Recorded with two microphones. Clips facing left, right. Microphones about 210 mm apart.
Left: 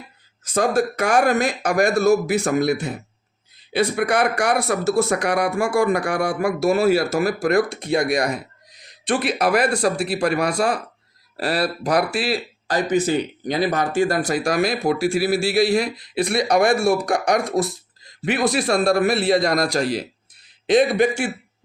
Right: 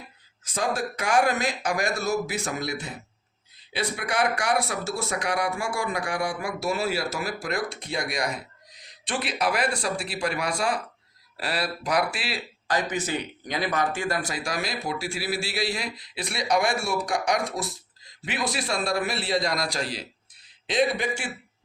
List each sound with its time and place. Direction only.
0.4 s speech: 65° left (ahead or behind)
11.3 s speech: 40° left (ahead or behind)
14.3 s speech: 55° left (ahead or behind)